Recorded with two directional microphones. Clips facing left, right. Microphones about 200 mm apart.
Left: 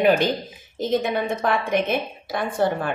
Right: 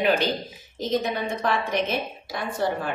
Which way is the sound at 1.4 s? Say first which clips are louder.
Left 2 dB; 50° left (ahead or behind).